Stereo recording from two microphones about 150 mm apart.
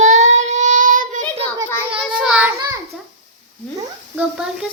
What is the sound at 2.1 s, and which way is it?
Child singing, 5° right (ahead or behind).